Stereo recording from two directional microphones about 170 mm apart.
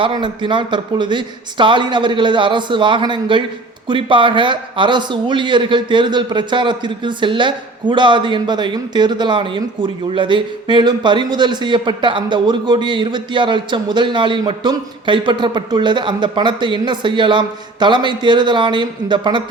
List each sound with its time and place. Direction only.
0.0 s a man's voice: 30° right (ahead or behind)